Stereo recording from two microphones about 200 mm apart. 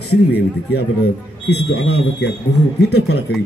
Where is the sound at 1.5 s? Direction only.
55° left (ahead or behind).